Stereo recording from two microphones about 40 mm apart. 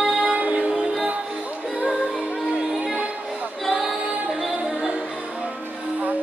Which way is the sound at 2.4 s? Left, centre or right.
Centre.